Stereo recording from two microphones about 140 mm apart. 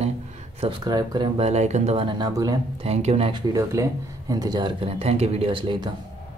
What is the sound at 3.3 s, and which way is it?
Speech, 25° right (ahead or behind).